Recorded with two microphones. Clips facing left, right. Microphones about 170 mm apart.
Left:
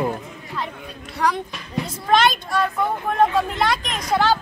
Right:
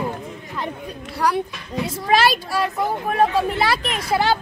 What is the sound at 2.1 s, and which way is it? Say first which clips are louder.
Speech: even; 5° right (ahead or behind).